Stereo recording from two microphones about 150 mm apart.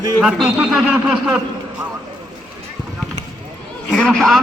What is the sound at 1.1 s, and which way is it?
Speech, 5° right (ahead or behind).